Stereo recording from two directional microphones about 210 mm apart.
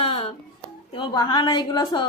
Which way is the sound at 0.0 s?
30° left (ahead or behind).